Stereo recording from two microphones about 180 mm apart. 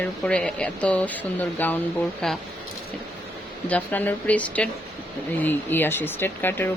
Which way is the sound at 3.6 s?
10° left (ahead or behind).